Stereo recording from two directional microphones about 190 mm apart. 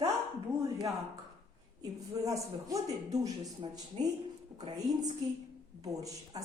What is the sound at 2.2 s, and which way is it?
Speech, 15° right (ahead or behind).